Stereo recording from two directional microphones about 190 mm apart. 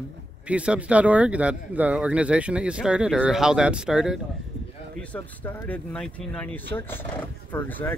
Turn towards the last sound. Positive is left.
turn(degrees=10)  # may be behind; listen again after turning